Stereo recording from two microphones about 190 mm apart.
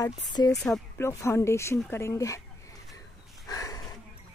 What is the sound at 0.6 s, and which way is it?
Speech, centre (ahead or behind).